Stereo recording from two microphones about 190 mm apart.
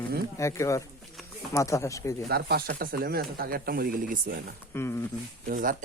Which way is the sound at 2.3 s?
55° right (ahead or behind).